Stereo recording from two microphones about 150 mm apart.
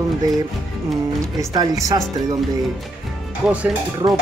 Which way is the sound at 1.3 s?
25° right (ahead or behind).